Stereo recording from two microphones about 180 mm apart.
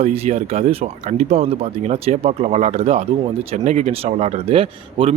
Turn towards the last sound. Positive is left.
turn(degrees=-35)  # may be behind; listen again after turning